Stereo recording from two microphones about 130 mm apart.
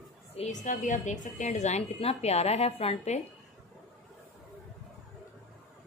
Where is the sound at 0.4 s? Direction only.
70° left (ahead or behind); by 3.2 s 50° left (ahead or behind).